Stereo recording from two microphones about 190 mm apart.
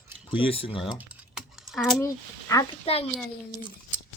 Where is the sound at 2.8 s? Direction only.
30° left (ahead or behind).